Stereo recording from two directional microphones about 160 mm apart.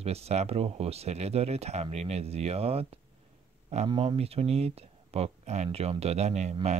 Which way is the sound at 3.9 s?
35° right (ahead or behind).